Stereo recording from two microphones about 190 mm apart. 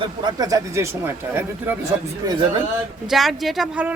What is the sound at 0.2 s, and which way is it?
Speech, 20° right (ahead or behind).